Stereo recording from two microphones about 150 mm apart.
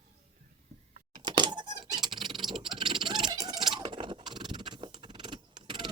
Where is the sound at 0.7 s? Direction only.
45° right (ahead or behind).